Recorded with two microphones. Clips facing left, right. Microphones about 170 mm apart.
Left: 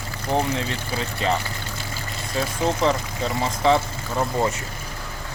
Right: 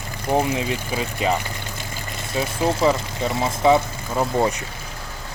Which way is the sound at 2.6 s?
5° right (ahead or behind).